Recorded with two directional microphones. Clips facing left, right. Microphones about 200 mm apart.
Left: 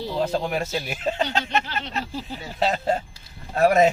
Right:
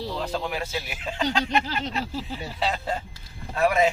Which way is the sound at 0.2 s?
45° left (ahead or behind).